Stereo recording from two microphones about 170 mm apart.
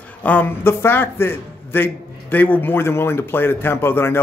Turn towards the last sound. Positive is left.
turn(degrees=15)  # may be behind; listen again after turning